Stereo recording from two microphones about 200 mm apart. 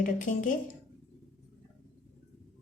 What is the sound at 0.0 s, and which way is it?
Speech, 40° left (ahead or behind).